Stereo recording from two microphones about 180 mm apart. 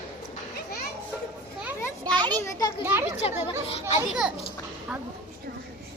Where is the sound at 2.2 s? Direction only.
25° right (ahead or behind).